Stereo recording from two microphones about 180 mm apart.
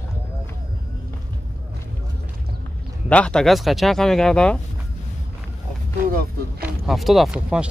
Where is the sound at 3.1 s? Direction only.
5° left (ahead or behind).